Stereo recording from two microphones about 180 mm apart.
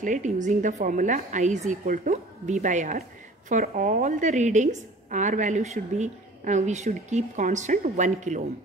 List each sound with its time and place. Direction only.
0.0 s a woman's voice: 45° right (ahead or behind)